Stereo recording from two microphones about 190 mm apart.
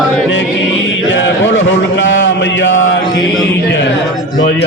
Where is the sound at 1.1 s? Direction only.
80° left.